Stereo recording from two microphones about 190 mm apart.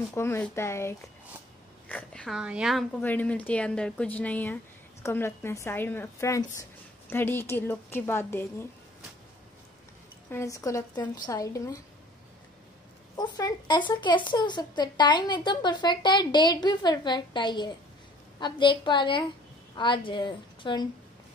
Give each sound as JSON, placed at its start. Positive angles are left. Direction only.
{"t": 0.1, "sound": "a woman's voice", "side_deg": 15}
{"t": 10.3, "sound": "a woman's voice", "side_deg": 15}
{"t": 13.1, "sound": "a woman's voice", "side_deg": 20}